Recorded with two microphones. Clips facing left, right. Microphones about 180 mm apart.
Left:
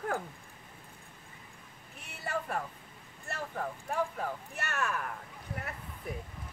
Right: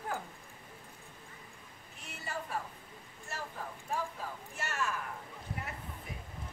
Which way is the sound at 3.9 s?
60° left (ahead or behind).